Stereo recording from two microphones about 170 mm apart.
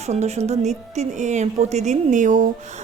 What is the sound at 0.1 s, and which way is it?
A woman's voice, 40° right (ahead or behind).